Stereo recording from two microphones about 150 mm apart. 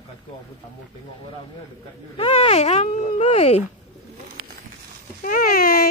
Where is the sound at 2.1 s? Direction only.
40° left (ahead or behind).